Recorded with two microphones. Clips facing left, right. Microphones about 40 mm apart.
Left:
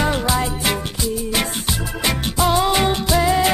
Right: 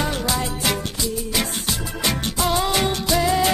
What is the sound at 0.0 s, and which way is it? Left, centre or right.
Music, left.